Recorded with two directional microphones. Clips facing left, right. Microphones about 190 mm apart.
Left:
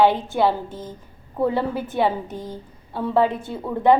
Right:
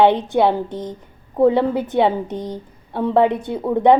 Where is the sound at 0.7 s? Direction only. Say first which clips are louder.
Right 6 dB; 70° right (ahead or behind).